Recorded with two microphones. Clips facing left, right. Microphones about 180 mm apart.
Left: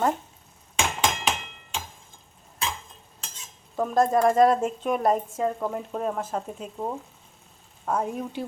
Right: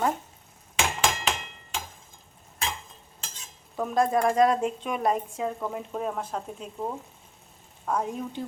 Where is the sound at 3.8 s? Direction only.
Centre (ahead or behind).